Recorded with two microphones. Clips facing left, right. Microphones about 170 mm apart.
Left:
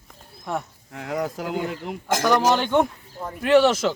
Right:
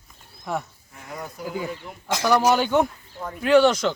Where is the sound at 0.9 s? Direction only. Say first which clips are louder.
Left 9 dB; 85° left.